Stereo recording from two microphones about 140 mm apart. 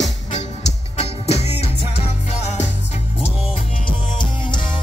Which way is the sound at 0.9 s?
50° left (ahead or behind).